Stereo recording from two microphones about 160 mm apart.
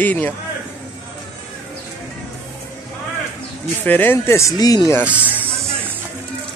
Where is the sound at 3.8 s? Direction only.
10° left (ahead or behind).